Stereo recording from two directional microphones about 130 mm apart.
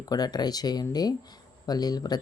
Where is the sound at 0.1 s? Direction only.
30° left (ahead or behind).